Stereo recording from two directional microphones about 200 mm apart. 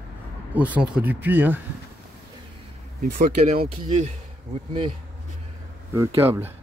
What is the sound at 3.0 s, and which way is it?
Speech, 35° right (ahead or behind).